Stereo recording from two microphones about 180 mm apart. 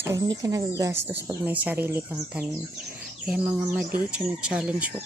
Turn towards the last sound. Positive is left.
turn(degrees=-5)  # may be behind; listen again after turning